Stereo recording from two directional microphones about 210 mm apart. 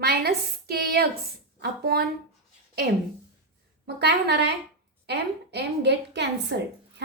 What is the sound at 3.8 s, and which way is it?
A woman's voice, 50° right (ahead or behind).